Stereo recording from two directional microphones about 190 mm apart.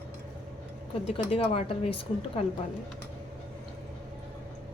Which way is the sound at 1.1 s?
30° left (ahead or behind).